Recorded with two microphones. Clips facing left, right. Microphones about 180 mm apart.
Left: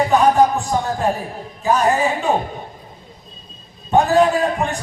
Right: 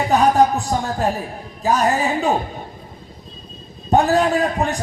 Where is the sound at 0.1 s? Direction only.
40° right (ahead or behind).